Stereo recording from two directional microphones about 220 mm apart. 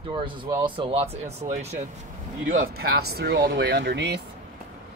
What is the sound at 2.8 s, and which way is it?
Speech, 45° right (ahead or behind).